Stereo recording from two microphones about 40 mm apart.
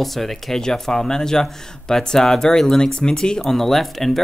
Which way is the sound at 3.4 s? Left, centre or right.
Centre.